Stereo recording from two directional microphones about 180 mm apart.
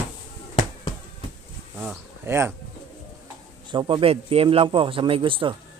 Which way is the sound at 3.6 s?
25° right (ahead or behind).